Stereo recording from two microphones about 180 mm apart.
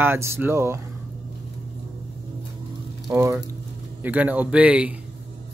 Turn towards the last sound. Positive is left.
turn(degrees=-5)  # may be behind; listen again after turning